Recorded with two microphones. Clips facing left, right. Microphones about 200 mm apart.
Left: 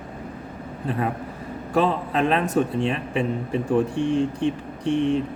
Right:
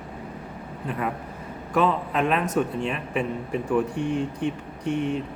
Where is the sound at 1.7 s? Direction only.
30° left (ahead or behind).